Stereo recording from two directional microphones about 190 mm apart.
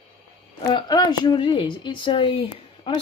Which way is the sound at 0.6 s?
25° left (ahead or behind).